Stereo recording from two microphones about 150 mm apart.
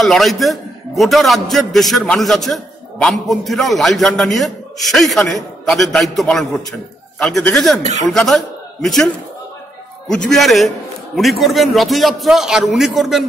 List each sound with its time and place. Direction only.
0.0 s a man's voice: centre (ahead or behind)